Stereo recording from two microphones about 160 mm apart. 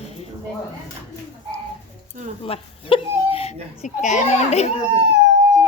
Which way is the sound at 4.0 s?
45° left (ahead or behind).